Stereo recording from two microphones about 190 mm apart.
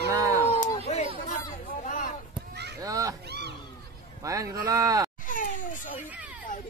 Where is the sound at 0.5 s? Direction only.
35° left (ahead or behind).